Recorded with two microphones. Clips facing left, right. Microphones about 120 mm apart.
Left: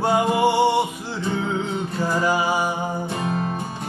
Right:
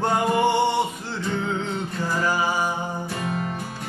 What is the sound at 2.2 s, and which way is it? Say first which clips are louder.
Music: left 2 dB; 15° left (ahead or behind).